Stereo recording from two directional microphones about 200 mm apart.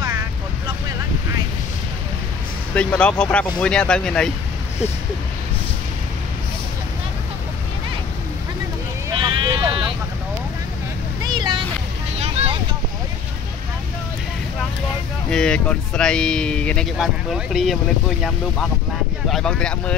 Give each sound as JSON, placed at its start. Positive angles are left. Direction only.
{"t": 0.0, "sound": "vehicle", "side_deg": -15}
{"t": 2.7, "sound": "speech", "side_deg": 5}
{"t": 9.1, "sound": "sheep", "side_deg": -25}
{"t": 11.2, "sound": "a sound", "side_deg": -20}
{"t": 12.2, "sound": "vehicle", "side_deg": -30}
{"t": 15.2, "sound": "speech", "side_deg": 5}
{"t": 19.3, "sound": "speech", "side_deg": 5}